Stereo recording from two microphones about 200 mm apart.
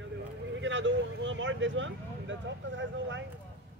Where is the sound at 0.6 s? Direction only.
65° right (ahead or behind).